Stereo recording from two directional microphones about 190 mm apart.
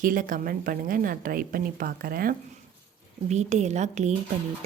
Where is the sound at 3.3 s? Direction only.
35° right (ahead or behind).